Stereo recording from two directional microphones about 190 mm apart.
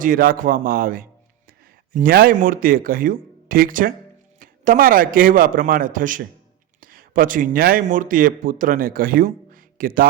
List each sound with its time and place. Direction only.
0.0 s speech: 50° right (ahead or behind)